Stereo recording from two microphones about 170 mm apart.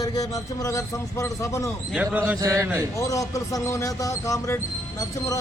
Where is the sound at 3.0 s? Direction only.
20° left (ahead or behind).